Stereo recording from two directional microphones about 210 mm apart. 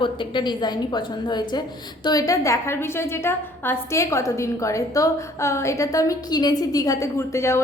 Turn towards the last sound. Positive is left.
turn(degrees=15)  # may be behind; listen again after turning